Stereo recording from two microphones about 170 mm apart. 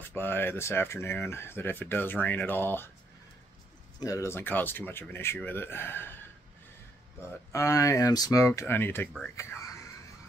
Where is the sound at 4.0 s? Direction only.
20° left (ahead or behind).